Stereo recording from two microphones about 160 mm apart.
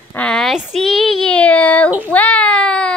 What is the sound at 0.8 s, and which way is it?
Child singing, centre (ahead or behind).